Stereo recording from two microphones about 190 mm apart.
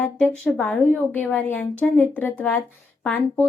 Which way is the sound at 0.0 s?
5° left (ahead or behind).